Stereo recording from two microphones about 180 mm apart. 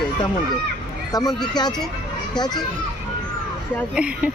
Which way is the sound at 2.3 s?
25° left (ahead or behind).